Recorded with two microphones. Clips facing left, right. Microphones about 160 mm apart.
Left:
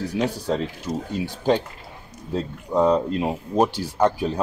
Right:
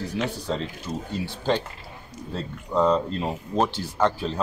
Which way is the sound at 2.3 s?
15° left (ahead or behind).